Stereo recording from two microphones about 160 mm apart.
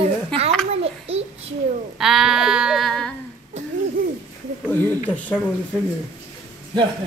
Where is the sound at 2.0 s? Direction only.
Centre (ahead or behind).